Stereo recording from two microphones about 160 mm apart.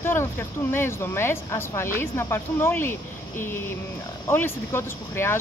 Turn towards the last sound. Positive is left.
turn(degrees=15)  # may be behind; listen again after turning